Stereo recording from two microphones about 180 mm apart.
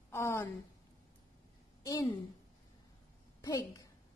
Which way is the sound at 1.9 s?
20° left (ahead or behind).